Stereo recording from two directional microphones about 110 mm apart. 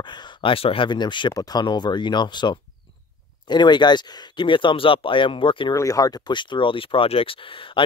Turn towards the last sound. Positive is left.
turn(degrees=55)  # may be behind; listen again after turning